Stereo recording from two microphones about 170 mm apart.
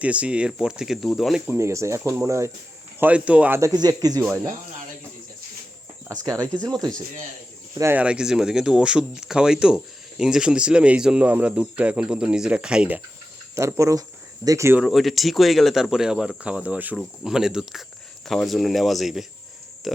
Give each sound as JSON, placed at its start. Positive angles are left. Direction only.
{"t": 0.0, "sound": "speech", "side_deg": -5}
{"t": 1.5, "sound": "speech", "side_deg": -15}
{"t": 6.1, "sound": "speech", "side_deg": -20}
{"t": 7.8, "sound": "speech", "side_deg": -10}
{"t": 13.6, "sound": "speech", "side_deg": -15}
{"t": 14.8, "sound": "speech", "side_deg": 0}